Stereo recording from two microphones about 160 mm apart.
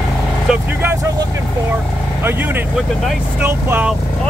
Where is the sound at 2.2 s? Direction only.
15° right (ahead or behind).